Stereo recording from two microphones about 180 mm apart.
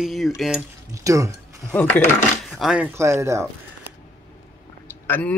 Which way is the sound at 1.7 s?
5° left (ahead or behind).